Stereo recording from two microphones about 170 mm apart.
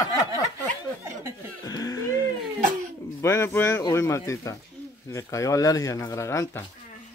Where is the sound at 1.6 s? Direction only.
20° left (ahead or behind).